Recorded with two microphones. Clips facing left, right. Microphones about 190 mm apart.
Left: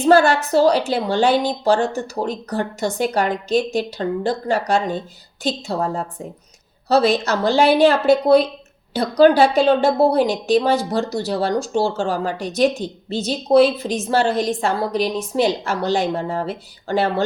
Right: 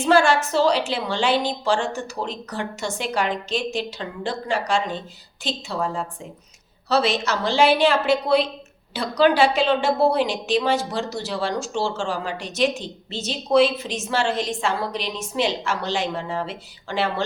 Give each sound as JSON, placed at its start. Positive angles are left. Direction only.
{"t": 0.0, "sound": "a woman's voice", "side_deg": 40}